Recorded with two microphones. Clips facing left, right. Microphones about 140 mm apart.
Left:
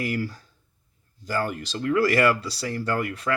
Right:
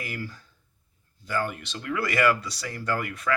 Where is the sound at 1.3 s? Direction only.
35° left (ahead or behind).